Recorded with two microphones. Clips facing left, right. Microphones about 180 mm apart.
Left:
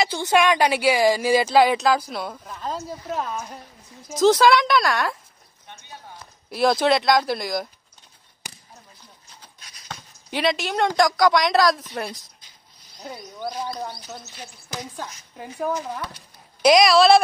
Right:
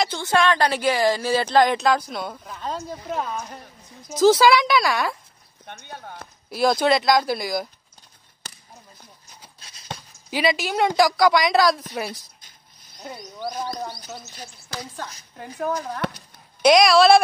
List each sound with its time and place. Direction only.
0.0 s speech: 15° left (ahead or behind); by 5.2 s centre (ahead or behind)
5.7 s speech: 60° right (ahead or behind)
6.5 s speech: centre (ahead or behind)
8.4 s chop: 15° left (ahead or behind)
9.6 s a sound: 30° right (ahead or behind)
10.3 s speech: centre (ahead or behind)